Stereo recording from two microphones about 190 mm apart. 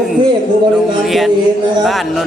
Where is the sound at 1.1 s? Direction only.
Centre (ahead or behind).